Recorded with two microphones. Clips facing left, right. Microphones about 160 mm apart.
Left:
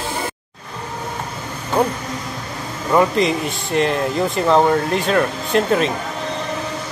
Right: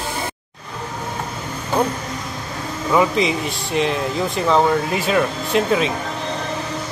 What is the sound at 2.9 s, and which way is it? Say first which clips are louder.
Speech: left 2 dB; centre (ahead or behind).